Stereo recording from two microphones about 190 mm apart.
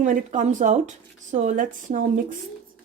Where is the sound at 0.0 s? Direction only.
40° right (ahead or behind).